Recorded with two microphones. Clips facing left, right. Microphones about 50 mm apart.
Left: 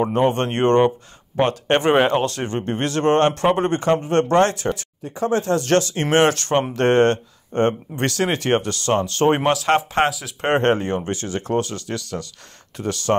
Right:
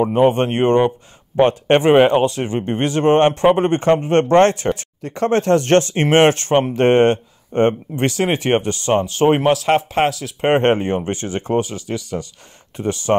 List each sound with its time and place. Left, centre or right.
0.1 s speech: centre; by 4.8 s right
5.0 s speech: right; by 10.3 s centre
10.4 s speech: right
11.6 s speech: centre